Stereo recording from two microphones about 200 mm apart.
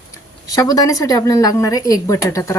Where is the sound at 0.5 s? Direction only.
20° left (ahead or behind).